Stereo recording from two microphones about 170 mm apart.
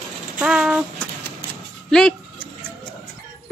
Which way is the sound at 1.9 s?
5° left (ahead or behind).